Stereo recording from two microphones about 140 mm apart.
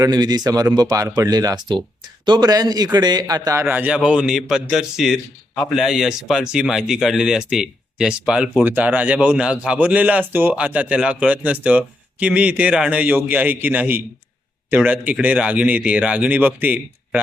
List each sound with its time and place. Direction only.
0.0 s a man's voice: 30° right (ahead or behind); by 17.2 s 10° right (ahead or behind)